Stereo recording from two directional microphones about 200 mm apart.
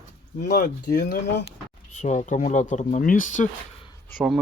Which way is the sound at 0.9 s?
40° left (ahead or behind).